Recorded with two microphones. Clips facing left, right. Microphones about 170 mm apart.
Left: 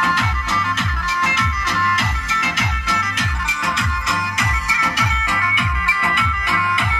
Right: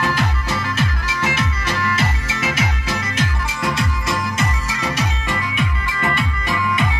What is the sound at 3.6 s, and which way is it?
Music, 30° right (ahead or behind).